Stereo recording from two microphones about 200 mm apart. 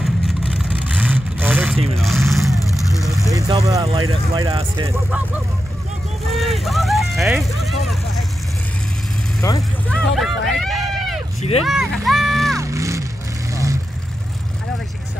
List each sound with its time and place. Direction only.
0.0 s vehicle: centre (ahead or behind)
3.3 s speech: 20° right (ahead or behind)
6.3 s vehicle: centre (ahead or behind)
9.4 s speech: 15° left (ahead or behind)
9.9 s run: centre (ahead or behind)
11.6 s speech: centre (ahead or behind)
12.5 s music: 15° right (ahead or behind)
13.5 s vehicle: 15° right (ahead or behind)